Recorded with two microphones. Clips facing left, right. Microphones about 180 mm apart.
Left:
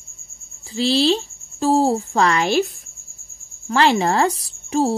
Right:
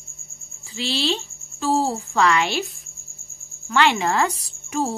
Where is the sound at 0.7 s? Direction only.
35° left (ahead or behind).